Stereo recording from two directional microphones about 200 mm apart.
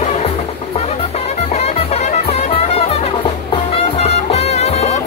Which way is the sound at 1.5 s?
30° left (ahead or behind).